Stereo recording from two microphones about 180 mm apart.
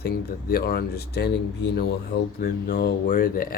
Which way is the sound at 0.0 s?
60° left (ahead or behind).